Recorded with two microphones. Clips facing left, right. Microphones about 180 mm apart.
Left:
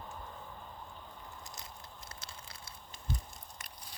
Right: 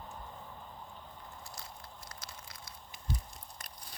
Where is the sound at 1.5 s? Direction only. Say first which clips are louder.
Right 1 dB; 20° left (ahead or behind).